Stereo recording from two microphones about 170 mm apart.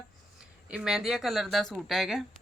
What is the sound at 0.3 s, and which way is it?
A woman's voice, 5° right (ahead or behind).